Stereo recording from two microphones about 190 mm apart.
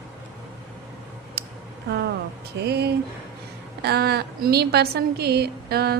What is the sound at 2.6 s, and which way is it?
A woman's voice, 60° right (ahead or behind).